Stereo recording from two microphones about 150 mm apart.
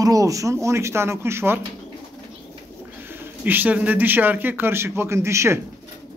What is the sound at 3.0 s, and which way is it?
Speech, 10° right (ahead or behind).